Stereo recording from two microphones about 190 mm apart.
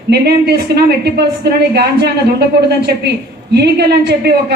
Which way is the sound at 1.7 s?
60° right (ahead or behind).